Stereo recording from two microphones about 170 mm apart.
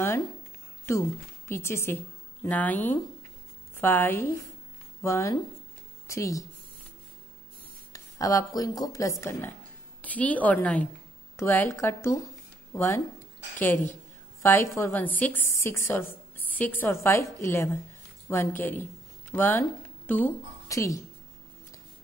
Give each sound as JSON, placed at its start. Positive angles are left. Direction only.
{"t": 0.9, "sound": "a woman's voice", "side_deg": 15}
{"t": 7.9, "sound": "a woman's voice", "side_deg": 20}